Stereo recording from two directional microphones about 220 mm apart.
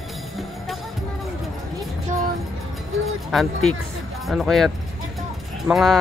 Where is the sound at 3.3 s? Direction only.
Centre (ahead or behind).